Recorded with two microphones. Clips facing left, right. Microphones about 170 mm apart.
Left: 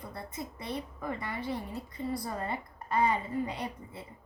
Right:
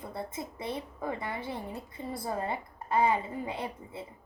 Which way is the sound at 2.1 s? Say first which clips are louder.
Right 2 dB; 25° right (ahead or behind).